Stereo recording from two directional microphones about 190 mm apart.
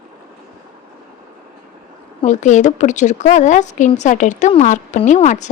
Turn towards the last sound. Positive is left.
turn(degrees=40)  # may be behind; listen again after turning